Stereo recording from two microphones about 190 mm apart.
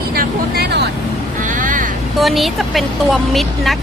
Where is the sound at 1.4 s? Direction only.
45° right (ahead or behind).